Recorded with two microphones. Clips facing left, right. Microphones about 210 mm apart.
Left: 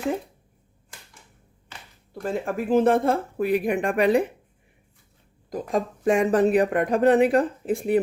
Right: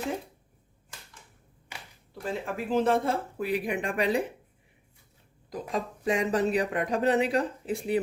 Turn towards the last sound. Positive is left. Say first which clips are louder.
# left 6 dB
turn(degrees=50)  # may be behind; listen again after turning